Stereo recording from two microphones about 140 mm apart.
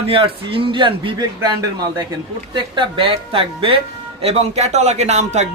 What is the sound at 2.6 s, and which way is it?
A man's voice, 35° right (ahead or behind).